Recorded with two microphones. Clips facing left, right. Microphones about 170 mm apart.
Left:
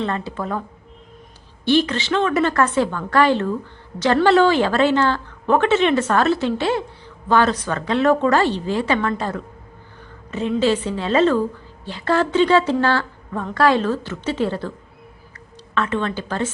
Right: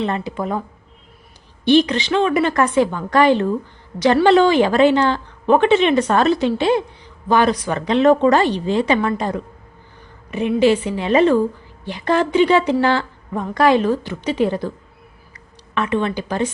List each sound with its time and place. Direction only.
0.0 s a woman's voice: 15° right (ahead or behind)
1.6 s a woman's voice: 20° right (ahead or behind)
15.7 s a woman's voice: 10° right (ahead or behind)